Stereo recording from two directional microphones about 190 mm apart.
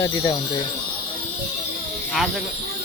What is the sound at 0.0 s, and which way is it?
Speech, 20° left (ahead or behind).